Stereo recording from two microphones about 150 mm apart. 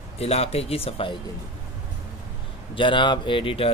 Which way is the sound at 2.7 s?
35° left (ahead or behind).